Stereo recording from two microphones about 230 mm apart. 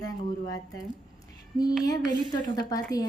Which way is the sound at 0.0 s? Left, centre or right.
Centre.